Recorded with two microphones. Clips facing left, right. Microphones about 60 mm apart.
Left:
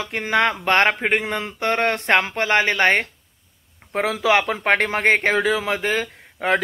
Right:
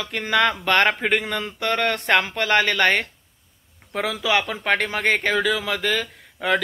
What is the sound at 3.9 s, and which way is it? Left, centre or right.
Speech, left.